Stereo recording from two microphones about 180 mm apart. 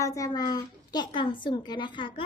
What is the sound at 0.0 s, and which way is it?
A woman's voice, 20° left (ahead or behind).